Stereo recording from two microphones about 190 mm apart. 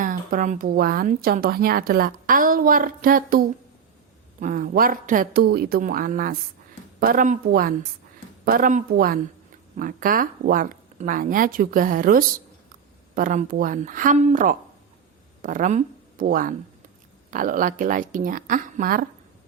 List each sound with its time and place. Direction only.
0.0 s speech: 45° right (ahead or behind)